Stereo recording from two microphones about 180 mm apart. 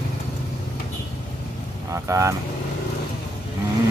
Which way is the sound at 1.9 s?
15° right (ahead or behind).